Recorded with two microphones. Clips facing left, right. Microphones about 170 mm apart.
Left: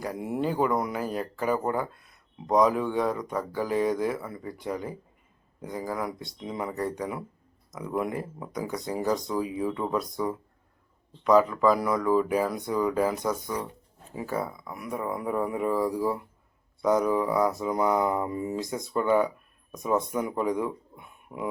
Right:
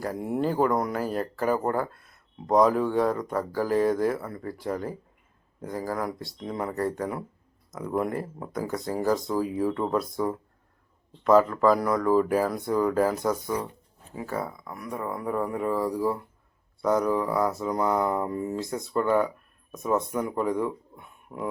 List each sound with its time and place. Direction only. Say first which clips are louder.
0.0 s speech: right 2 dB; centre (ahead or behind)